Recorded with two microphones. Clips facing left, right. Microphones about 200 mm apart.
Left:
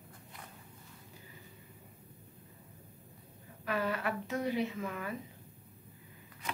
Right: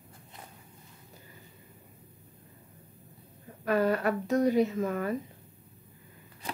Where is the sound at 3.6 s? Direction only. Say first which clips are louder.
Right 8 dB; 45° right (ahead or behind).